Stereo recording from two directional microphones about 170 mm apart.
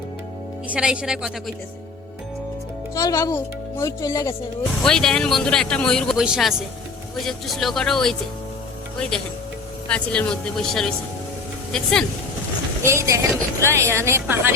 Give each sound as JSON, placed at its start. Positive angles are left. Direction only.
{"t": 0.7, "sound": "speech", "side_deg": -5}
{"t": 2.9, "sound": "speech", "side_deg": 20}
{"t": 4.8, "sound": "speech", "side_deg": 5}
{"t": 12.8, "sound": "speech", "side_deg": -15}